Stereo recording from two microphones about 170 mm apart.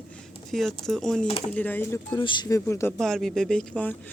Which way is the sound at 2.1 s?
25° left (ahead or behind).